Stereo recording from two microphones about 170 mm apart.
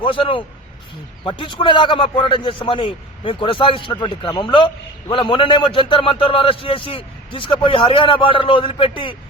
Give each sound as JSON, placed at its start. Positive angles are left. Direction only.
{"t": 0.0, "sound": "a man's voice", "side_deg": 30}